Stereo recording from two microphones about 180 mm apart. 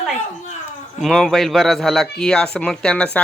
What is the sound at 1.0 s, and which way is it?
Speech, centre (ahead or behind).